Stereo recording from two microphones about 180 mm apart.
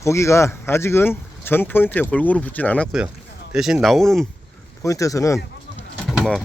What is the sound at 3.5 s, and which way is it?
Speech, centre (ahead or behind).